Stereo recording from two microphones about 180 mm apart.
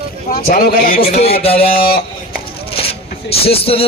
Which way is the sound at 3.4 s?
30° left (ahead or behind).